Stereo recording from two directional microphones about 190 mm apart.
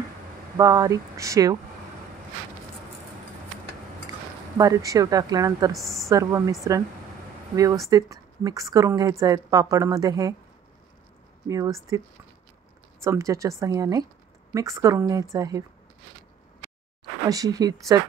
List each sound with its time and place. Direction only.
0.6 s speech: 20° right (ahead or behind)
4.6 s a woman's voice: 15° right (ahead or behind)
5.7 s a woman's voice: centre (ahead or behind)
6.0 s a woman's voice: 15° right (ahead or behind)
7.9 s a woman's voice: 15° right (ahead or behind)
11.4 s a woman's voice: 15° right (ahead or behind)
17.3 s speech: 20° right (ahead or behind)